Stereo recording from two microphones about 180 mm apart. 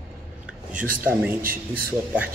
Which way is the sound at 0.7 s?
10° right (ahead or behind).